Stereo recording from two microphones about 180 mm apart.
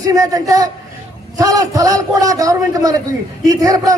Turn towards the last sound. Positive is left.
turn(degrees=-20)  # may be behind; listen again after turning